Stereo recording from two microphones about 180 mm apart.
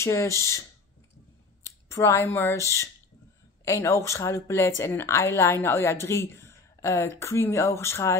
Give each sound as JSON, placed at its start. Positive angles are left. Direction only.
{"t": 0.0, "sound": "speech", "side_deg": 15}
{"t": 1.9, "sound": "speech", "side_deg": 15}